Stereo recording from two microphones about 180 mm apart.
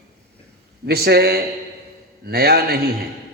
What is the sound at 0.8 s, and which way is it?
A man's voice, 60° right (ahead or behind).